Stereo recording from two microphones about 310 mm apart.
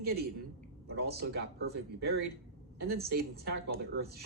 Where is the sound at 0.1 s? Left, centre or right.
Right.